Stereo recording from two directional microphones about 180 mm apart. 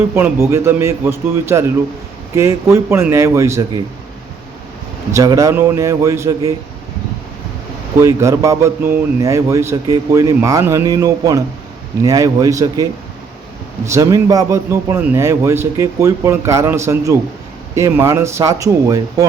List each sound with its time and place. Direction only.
0.0 s speech: 15° right (ahead or behind)
5.1 s speech: 15° right (ahead or behind)
8.0 s a man's voice: 15° right (ahead or behind)